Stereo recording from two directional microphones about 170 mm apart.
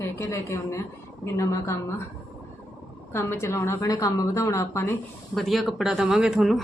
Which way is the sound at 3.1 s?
15° left (ahead or behind).